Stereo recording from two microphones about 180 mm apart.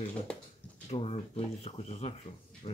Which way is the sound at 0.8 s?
35° left (ahead or behind).